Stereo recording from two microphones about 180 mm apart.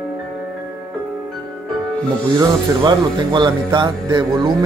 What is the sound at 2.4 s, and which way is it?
Speech, 25° right (ahead or behind).